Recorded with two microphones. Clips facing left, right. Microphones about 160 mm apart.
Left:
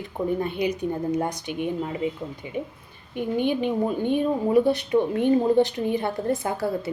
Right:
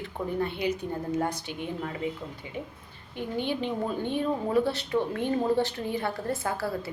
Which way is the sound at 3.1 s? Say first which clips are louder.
Left 6 dB; 15° left (ahead or behind).